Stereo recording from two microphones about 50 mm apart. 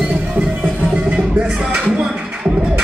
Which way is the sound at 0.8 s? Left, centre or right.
Right.